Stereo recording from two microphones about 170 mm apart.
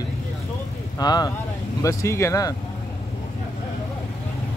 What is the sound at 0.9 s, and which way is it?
Speech, 25° left (ahead or behind).